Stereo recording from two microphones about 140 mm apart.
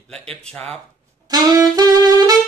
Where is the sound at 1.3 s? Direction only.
30° right (ahead or behind).